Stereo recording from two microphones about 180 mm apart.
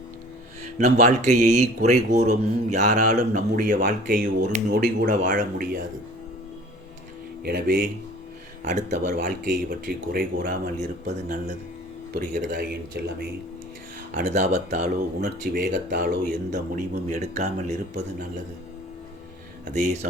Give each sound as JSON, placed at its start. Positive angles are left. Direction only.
{"t": 0.8, "sound": "speech", "side_deg": -40}
{"t": 7.4, "sound": "speech", "side_deg": -50}
{"t": 14.1, "sound": "speech", "side_deg": -45}
{"t": 19.7, "sound": "speech", "side_deg": -40}